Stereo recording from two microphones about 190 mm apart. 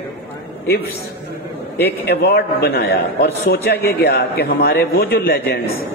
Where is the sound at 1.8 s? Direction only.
60° left (ahead or behind).